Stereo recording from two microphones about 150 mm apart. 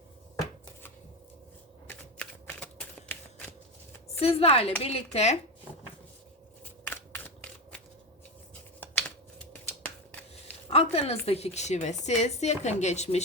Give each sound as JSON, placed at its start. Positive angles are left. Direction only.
{"t": 1.9, "sound": "shuffling cards", "side_deg": 10}
{"t": 4.2, "sound": "a woman's voice", "side_deg": 40}
{"t": 6.8, "sound": "a sound", "side_deg": 15}
{"t": 8.8, "sound": "computer keyboard", "side_deg": 10}
{"t": 10.7, "sound": "a woman's voice", "side_deg": 40}